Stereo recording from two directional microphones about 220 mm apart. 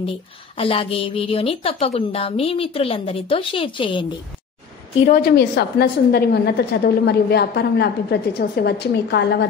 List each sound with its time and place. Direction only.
0.6 s a woman's voice: 25° left (ahead or behind)
5.0 s a woman's voice: 40° left (ahead or behind)